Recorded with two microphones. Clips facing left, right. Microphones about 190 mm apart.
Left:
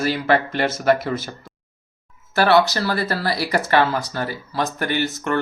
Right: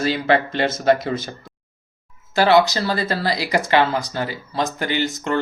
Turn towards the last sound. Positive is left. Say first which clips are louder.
# even
turn(degrees=-15)  # may be behind; listen again after turning